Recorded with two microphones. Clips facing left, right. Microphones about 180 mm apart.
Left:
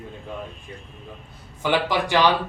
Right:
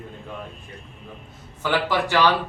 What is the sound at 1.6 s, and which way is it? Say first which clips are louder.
Speech: left 1 dB; 15° left (ahead or behind).